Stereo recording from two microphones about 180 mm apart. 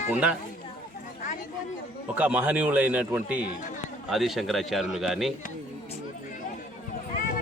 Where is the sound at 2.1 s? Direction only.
10° right (ahead or behind).